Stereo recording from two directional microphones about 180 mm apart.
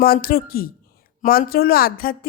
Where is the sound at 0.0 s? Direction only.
55° left (ahead or behind).